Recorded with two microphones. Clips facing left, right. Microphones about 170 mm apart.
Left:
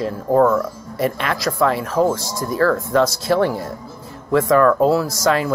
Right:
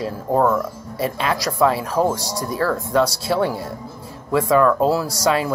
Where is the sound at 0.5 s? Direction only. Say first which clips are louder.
Left 2 dB; 10° right (ahead or behind).